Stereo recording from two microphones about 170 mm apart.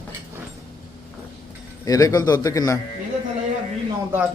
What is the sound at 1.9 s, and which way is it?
Speech, 20° left (ahead or behind).